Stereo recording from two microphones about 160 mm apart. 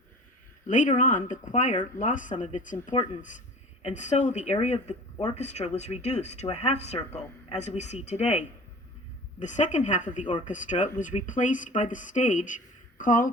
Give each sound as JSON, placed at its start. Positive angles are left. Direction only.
{"t": 0.7, "sound": "speech", "side_deg": 50}
{"t": 2.9, "sound": "speech", "side_deg": 30}
{"t": 3.8, "sound": "speech", "side_deg": 45}